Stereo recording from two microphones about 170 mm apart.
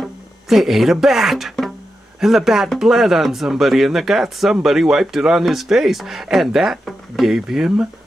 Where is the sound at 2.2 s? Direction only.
Centre (ahead or behind).